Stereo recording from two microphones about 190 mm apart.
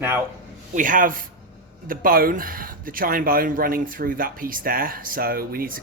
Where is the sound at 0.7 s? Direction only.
45° right (ahead or behind).